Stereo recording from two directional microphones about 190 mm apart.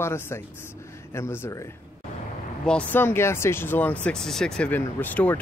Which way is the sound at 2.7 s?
10° left (ahead or behind).